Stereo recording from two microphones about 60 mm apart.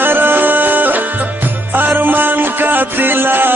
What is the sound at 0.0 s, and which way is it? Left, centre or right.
Music, right.